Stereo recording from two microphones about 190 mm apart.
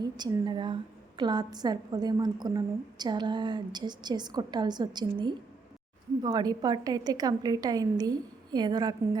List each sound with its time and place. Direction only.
0.0 s a woman's voice: 20° right (ahead or behind)